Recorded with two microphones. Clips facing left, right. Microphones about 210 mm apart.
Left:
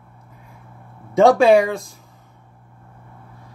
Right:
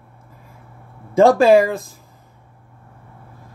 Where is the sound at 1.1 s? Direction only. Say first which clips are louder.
Right 1 dB; centre (ahead or behind).